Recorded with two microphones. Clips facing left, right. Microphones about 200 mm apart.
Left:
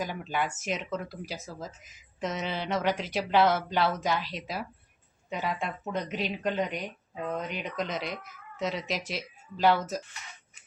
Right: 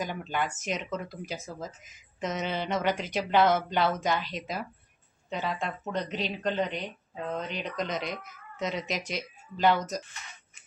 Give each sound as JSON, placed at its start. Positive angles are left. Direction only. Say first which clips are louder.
{"t": 0.0, "sound": "speech", "louder": "even", "side_deg": 0}